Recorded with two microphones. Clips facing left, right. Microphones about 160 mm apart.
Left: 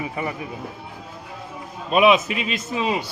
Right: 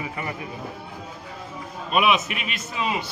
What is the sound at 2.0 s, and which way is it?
Speech, 30° left (ahead or behind).